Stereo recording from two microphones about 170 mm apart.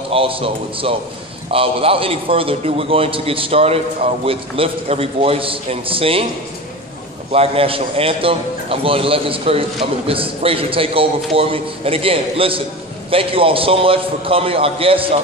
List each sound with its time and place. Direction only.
0.1 s a man's voice: 35° right (ahead or behind)
7.3 s a man's voice: 35° right (ahead or behind)